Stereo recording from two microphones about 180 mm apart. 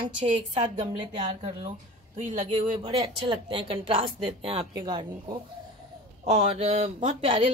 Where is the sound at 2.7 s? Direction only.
30° right (ahead or behind).